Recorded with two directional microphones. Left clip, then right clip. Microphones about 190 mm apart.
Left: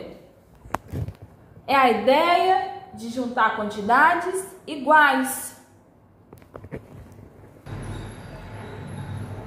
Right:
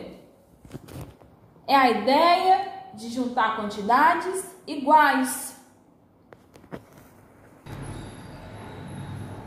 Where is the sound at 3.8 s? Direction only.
20° right (ahead or behind).